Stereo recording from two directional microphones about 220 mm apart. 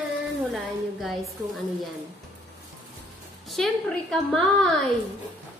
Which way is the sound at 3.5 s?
Centre (ahead or behind).